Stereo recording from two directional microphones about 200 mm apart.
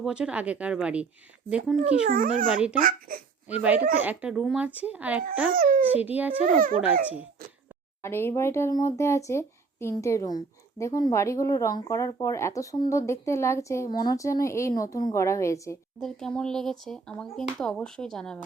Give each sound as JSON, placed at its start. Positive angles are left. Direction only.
{"t": 0.0, "sound": "speech", "side_deg": -5}
{"t": 1.8, "sound": "speech", "side_deg": -40}
{"t": 2.5, "sound": "speech", "side_deg": -5}
{"t": 3.1, "sound": "speech", "side_deg": -45}
{"t": 3.5, "sound": "speech", "side_deg": -5}
{"t": 5.5, "sound": "speech", "side_deg": -45}
{"t": 6.1, "sound": "speech", "side_deg": -10}
{"t": 6.4, "sound": "a child's voice", "side_deg": -40}
{"t": 8.0, "sound": "speech", "side_deg": 10}
{"t": 16.0, "sound": "speech", "side_deg": 0}